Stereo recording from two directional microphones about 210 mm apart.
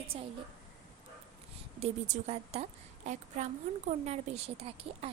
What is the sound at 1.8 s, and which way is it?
A woman's voice, 30° right (ahead or behind).